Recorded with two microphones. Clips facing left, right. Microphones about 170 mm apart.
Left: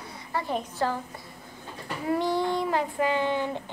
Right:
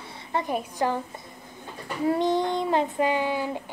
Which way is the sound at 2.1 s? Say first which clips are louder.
Right 2 dB; 20° right (ahead or behind).